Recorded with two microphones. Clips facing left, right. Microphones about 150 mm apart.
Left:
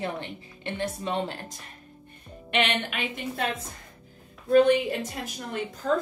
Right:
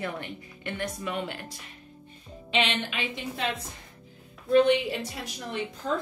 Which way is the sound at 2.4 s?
60° left (ahead or behind).